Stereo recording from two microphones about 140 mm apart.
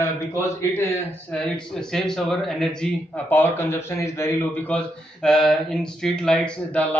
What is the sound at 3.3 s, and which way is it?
A man's voice, 15° left (ahead or behind).